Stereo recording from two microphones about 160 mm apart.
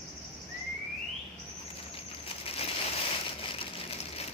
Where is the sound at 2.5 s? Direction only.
40° left (ahead or behind).